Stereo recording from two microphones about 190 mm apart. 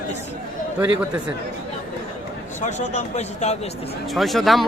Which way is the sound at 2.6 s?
35° left (ahead or behind).